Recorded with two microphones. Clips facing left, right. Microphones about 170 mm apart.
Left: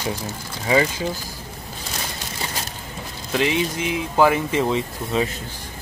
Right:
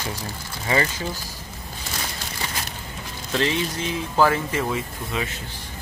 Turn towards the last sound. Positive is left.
turn(degrees=30)  # may be behind; listen again after turning